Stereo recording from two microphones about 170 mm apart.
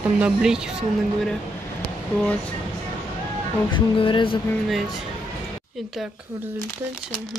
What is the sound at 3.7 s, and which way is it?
Speech, 30° left (ahead or behind).